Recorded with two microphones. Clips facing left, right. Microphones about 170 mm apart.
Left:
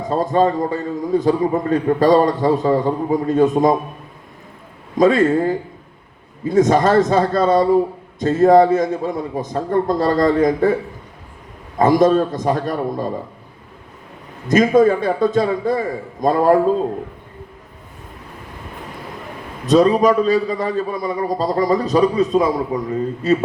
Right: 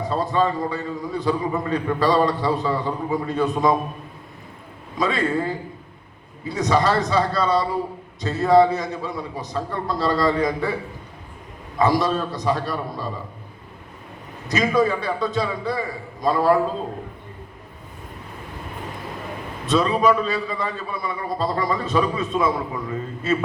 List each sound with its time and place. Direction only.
0.0 s a man's voice: 45° left (ahead or behind)
4.9 s a man's voice: 45° left (ahead or behind)
11.8 s a man's voice: 50° left (ahead or behind)
14.4 s a man's voice: 50° left (ahead or behind)
19.6 s a man's voice: 40° left (ahead or behind)